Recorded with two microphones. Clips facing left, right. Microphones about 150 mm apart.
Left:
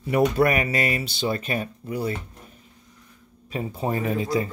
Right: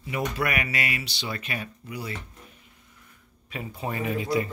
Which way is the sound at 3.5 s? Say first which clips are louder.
Left 6 dB; 35° left (ahead or behind).